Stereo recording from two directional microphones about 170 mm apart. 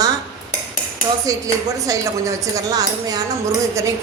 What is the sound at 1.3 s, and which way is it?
A woman's voice, 20° right (ahead or behind).